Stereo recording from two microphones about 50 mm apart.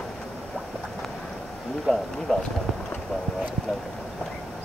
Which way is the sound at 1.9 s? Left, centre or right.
Centre.